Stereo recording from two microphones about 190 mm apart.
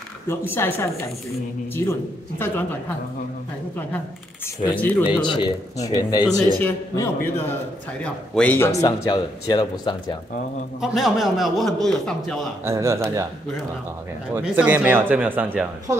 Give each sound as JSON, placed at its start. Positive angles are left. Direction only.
{"t": 0.3, "sound": "speech", "side_deg": 10}
{"t": 2.3, "sound": "speech", "side_deg": 10}
{"t": 4.7, "sound": "speech", "side_deg": 10}
{"t": 5.2, "sound": "speech", "side_deg": 25}
{"t": 10.8, "sound": "a man's voice", "side_deg": 0}
{"t": 12.6, "sound": "speech", "side_deg": -15}
{"t": 14.3, "sound": "speech", "side_deg": -10}